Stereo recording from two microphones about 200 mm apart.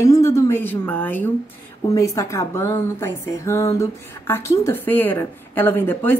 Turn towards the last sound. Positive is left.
turn(degrees=10)  # may be behind; listen again after turning